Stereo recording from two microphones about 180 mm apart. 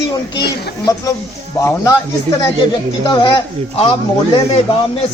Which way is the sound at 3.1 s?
25° left (ahead or behind).